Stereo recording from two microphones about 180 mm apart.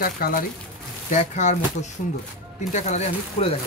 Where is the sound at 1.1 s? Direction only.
40° left (ahead or behind).